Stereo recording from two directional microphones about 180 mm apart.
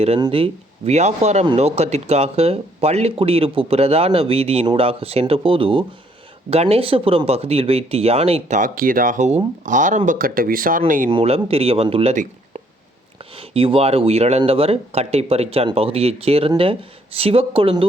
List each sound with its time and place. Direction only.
0.2 s speech: 30° right (ahead or behind); by 11.1 s 50° right (ahead or behind)
11.1 s speech: 35° right (ahead or behind)
12.1 s a sound: 45° right (ahead or behind)
13.3 s speech: 30° right (ahead or behind)